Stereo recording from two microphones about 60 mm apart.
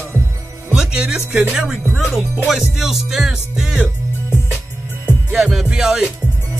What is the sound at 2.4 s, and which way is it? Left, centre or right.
Music, centre.